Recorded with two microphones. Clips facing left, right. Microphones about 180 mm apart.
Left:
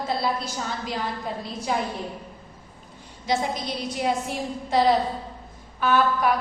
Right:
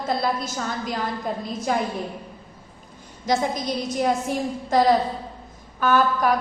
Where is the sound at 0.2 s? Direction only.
45° right (ahead or behind).